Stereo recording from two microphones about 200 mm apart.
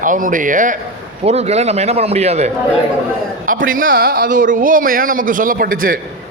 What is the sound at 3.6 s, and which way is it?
A man's voice, 45° right (ahead or behind).